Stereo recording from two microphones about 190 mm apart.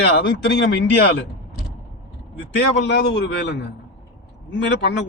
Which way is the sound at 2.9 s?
65° left (ahead or behind).